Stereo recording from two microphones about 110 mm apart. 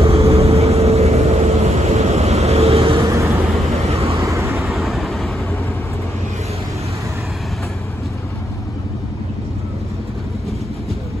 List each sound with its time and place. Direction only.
0.0 s vehicle: 65° right (ahead or behind)
3.0 s vehicle: 30° right (ahead or behind)
3.9 s vehicle: 65° right (ahead or behind)
4.2 s vehicle: 30° right (ahead or behind)
4.6 s vehicle: centre (ahead or behind)